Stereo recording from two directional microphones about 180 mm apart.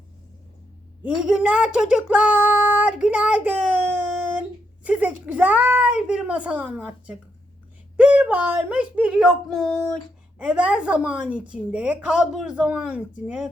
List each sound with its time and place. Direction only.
1.0 s a woman's voice: 5° right (ahead or behind)
10.3 s a woman's voice: 5° right (ahead or behind)